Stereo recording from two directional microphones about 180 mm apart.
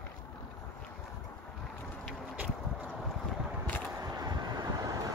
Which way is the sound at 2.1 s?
5° right (ahead or behind).